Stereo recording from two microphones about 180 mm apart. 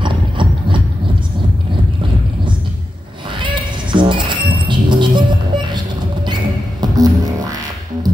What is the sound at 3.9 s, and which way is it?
Music, 25° right (ahead or behind).